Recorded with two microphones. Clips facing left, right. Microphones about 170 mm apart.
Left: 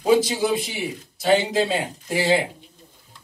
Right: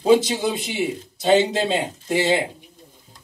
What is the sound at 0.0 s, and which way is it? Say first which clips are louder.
A man's voice: right 2 dB; 25° right (ahead or behind).